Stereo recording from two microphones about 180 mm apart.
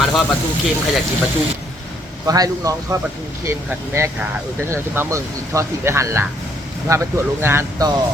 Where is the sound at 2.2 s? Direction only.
20° right (ahead or behind).